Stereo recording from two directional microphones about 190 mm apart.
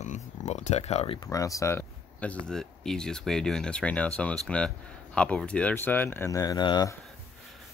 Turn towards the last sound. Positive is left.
turn(degrees=20)  # may be behind; listen again after turning